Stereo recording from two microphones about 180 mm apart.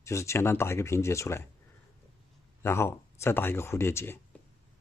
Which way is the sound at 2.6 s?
15° left (ahead or behind).